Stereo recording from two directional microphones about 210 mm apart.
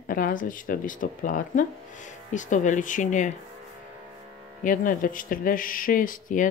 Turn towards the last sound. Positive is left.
turn(degrees=40)  # may be behind; listen again after turning